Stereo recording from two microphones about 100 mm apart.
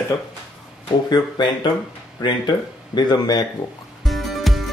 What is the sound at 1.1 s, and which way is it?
Speech, 50° left (ahead or behind).